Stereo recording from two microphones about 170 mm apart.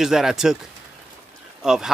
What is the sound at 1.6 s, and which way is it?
Speech, 5° right (ahead or behind).